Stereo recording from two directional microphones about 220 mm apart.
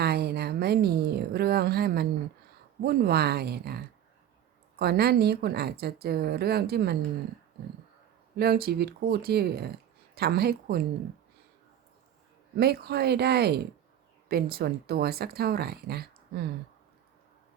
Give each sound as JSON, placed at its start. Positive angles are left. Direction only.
{"t": 0.0, "sound": "a sound", "side_deg": -45}
{"t": 2.8, "sound": "speech", "side_deg": -45}
{"t": 8.4, "sound": "speech", "side_deg": -45}
{"t": 12.5, "sound": "speech", "side_deg": -45}